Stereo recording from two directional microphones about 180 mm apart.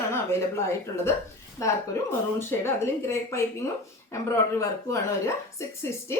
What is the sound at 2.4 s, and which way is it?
A woman's voice, 15° left (ahead or behind).